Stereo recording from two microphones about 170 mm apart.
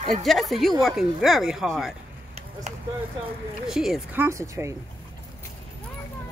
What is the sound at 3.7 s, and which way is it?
Speech, centre (ahead or behind).